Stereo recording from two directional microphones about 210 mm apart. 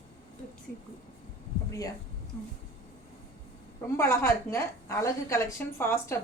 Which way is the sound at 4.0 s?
15° left (ahead or behind).